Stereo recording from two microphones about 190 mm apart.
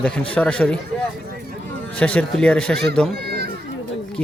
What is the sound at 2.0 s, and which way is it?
Speech, 5° left (ahead or behind).